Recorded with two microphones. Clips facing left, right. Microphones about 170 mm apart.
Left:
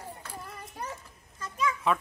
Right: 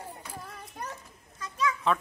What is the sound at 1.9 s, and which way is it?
Speech, 5° left (ahead or behind).